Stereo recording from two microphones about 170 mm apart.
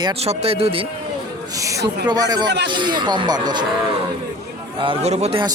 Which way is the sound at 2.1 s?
20° right (ahead or behind).